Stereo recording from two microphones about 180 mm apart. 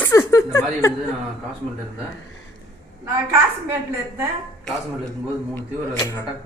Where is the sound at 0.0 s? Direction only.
15° left (ahead or behind).